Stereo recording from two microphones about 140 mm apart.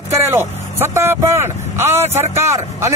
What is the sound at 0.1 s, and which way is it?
Speech, 20° right (ahead or behind).